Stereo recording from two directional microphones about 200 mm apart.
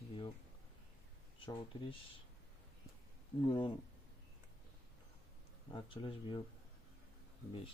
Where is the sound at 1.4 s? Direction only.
25° left (ahead or behind).